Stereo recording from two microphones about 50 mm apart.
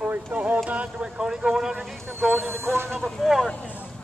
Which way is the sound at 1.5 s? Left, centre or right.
Centre.